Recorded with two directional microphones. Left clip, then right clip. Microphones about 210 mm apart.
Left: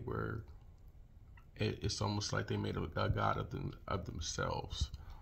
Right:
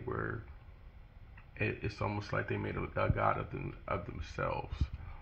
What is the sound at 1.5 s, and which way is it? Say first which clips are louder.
Speech: right 2 dB; 45° left (ahead or behind).